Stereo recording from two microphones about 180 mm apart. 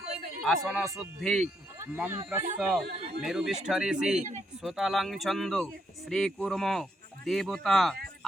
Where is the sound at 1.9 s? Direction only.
10° right (ahead or behind).